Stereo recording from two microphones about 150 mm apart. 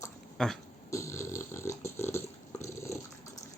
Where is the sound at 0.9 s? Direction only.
20° left (ahead or behind).